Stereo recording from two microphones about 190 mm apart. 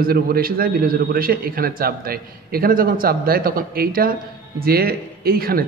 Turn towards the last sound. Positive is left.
turn(degrees=-50)  # may be behind; listen again after turning